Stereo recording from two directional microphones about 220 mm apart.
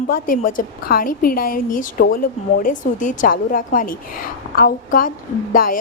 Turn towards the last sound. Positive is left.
turn(degrees=40)  # may be behind; listen again after turning